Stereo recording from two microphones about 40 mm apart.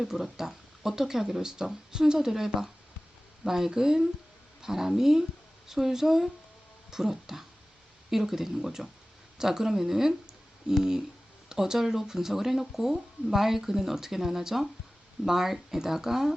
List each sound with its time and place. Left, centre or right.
0.1 s speech: centre